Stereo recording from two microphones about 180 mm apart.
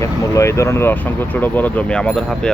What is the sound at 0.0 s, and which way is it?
Speech, 15° left (ahead or behind).